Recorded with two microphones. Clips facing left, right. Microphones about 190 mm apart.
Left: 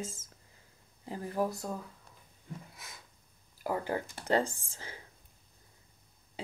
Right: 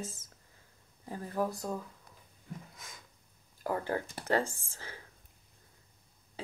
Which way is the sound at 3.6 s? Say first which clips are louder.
Even; 15° left (ahead or behind).